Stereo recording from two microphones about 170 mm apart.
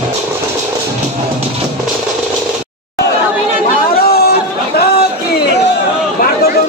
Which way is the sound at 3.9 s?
65° left (ahead or behind).